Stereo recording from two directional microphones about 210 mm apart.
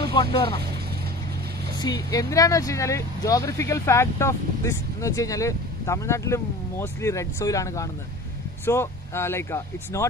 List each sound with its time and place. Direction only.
0.1 s speech: 25° left (ahead or behind)
1.8 s speech: 20° left (ahead or behind)